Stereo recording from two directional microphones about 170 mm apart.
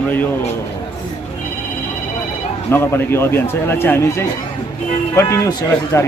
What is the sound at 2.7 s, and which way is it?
Speech, 15° left (ahead or behind).